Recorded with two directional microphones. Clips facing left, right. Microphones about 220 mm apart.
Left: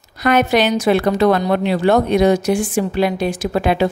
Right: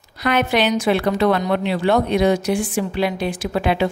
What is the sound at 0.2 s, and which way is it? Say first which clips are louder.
A woman's voice: left 4 dB; 45° left (ahead or behind).